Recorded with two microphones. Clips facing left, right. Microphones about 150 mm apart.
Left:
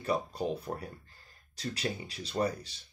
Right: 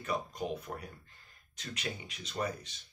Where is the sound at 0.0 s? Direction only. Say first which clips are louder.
Left 4 dB; 30° left (ahead or behind).